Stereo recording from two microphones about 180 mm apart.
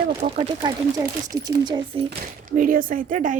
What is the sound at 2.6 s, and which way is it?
Speech, 50° right (ahead or behind).